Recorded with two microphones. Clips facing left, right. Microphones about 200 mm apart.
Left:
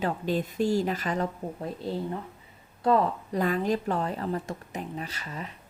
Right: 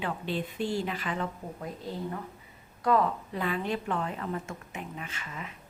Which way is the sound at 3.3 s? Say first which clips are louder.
Left 5 dB; 40° left (ahead or behind).